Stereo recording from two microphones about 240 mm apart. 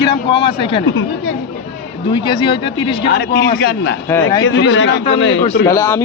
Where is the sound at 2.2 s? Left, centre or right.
Centre.